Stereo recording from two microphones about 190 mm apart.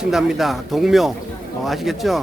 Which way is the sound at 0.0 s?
5° right (ahead or behind).